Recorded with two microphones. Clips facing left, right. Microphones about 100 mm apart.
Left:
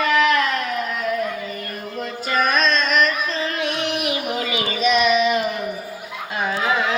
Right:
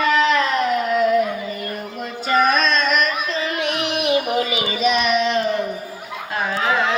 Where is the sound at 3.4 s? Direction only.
20° right (ahead or behind).